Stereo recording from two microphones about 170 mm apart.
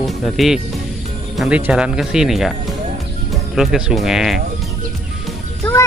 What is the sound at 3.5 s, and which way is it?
Speech, 5° right (ahead or behind).